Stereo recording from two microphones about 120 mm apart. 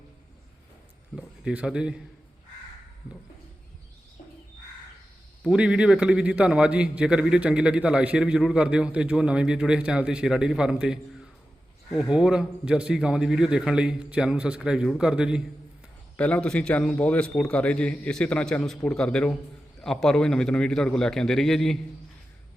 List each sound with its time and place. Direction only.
1.1 s a man's voice: 5° right (ahead or behind)
5.5 s a man's voice: 10° right (ahead or behind)
16.1 s a man's voice: 10° left (ahead or behind)